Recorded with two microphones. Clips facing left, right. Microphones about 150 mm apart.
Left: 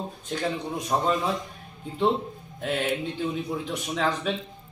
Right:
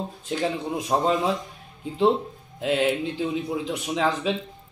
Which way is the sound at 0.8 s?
25° right (ahead or behind).